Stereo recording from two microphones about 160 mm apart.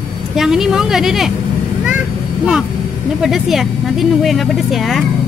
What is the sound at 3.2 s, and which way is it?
Speech, centre (ahead or behind).